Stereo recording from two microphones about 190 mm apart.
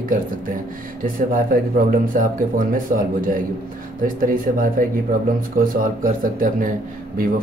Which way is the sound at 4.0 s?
45° right (ahead or behind).